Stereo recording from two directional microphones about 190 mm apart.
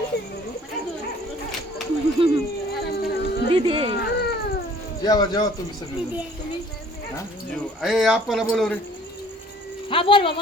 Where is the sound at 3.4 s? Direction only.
30° right (ahead or behind).